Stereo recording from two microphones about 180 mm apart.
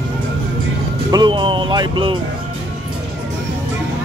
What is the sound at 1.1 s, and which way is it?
Speech, 25° right (ahead or behind).